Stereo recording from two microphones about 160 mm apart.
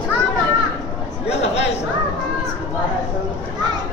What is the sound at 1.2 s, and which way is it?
Chatter, 40° left (ahead or behind).